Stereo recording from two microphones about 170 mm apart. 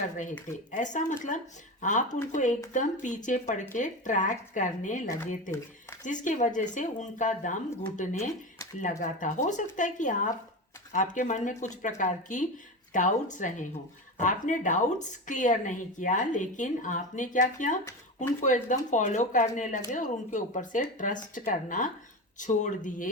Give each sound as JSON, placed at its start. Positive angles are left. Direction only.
{"t": 0.7, "sound": "speech", "side_deg": 45}